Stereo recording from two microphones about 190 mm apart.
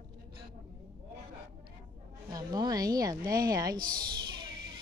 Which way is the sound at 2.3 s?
20° right (ahead or behind).